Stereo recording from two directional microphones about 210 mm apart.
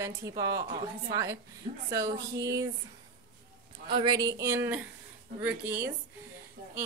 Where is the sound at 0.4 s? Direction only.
15° right (ahead or behind).